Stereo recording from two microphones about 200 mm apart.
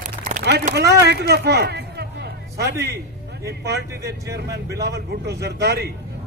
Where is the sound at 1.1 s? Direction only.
55° right (ahead or behind).